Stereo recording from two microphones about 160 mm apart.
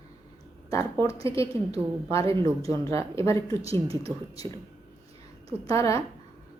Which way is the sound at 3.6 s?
40° right (ahead or behind).